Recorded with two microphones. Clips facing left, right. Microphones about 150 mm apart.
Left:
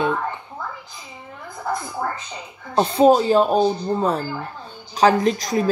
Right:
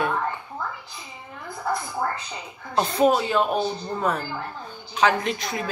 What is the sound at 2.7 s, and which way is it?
Speech, 30° left (ahead or behind).